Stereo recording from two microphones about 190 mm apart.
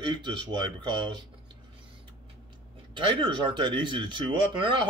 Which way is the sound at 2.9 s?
25° right (ahead or behind).